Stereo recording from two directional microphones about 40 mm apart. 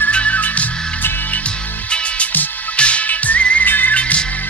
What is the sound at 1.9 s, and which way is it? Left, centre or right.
Music, left.